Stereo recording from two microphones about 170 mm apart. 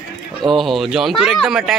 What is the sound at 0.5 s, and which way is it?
A man's voice, centre (ahead or behind).